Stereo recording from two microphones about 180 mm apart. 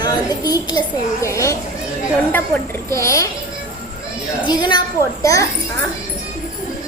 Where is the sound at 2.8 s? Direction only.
15° left (ahead or behind).